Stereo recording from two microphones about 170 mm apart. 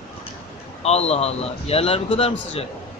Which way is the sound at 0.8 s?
40° left (ahead or behind).